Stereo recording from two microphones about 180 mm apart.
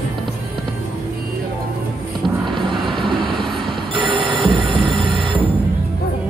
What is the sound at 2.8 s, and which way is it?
Vehicle, centre (ahead or behind).